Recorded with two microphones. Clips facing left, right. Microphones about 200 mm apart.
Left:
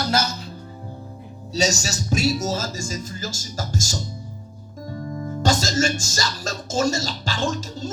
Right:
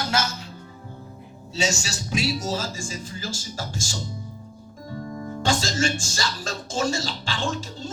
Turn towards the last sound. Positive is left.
turn(degrees=40)  # may be behind; listen again after turning